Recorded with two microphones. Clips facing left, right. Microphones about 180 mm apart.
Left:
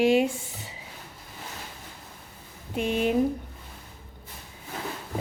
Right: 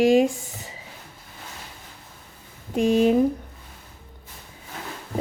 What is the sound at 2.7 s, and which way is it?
Speech, 40° right (ahead or behind).